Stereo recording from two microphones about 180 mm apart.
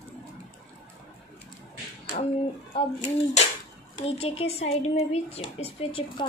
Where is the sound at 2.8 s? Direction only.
35° left (ahead or behind).